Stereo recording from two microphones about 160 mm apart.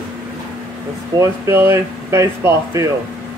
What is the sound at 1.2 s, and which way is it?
Speech, 15° right (ahead or behind).